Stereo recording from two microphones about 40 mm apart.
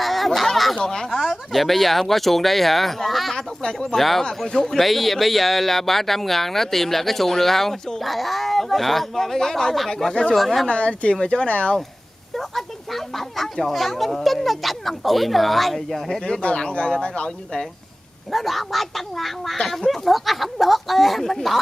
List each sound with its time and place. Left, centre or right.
0.0 s a sound: centre
1.1 s speech: centre
3.3 s speech: centre
3.9 s speech: centre
4.5 s speech: centre
4.7 s speech: centre
10.7 s speech: left
11.4 s speech: left
12.4 s speech: centre
16.4 s speech: left
18.3 s speech: centre